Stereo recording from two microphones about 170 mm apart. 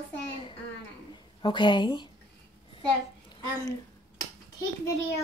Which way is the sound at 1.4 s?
30° left (ahead or behind).